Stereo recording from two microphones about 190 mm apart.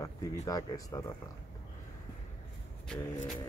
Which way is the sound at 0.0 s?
15° left (ahead or behind).